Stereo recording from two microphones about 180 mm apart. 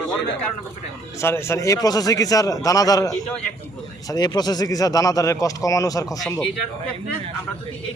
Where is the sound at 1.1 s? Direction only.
15° left (ahead or behind).